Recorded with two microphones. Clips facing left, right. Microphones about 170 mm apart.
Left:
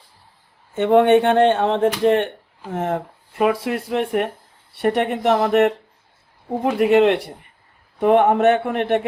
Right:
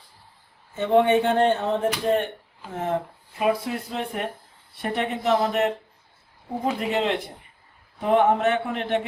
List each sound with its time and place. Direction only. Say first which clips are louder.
0.8 s speech: left 5 dB; 65° left (ahead or behind)
6.7 s speech: left 14 dB; 65° left (ahead or behind)